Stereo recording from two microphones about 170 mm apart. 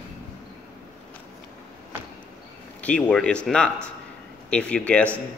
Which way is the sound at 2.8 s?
5° left (ahead or behind).